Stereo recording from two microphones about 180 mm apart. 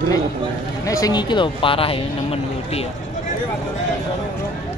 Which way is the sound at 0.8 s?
20° left (ahead or behind).